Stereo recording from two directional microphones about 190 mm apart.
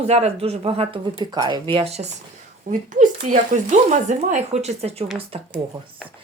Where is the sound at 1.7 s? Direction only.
30° right (ahead or behind).